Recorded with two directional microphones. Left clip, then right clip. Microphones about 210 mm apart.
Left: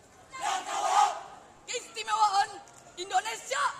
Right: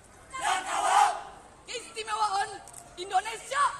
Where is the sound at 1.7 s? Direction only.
50° left (ahead or behind).